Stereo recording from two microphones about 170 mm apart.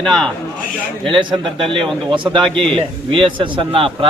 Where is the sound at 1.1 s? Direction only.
30° right (ahead or behind).